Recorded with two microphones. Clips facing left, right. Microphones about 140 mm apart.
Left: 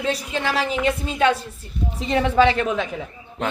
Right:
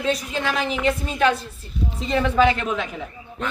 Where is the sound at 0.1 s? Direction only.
30° left (ahead or behind).